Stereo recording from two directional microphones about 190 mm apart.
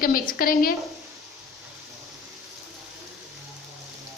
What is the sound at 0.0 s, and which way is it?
Speech, 50° left (ahead or behind).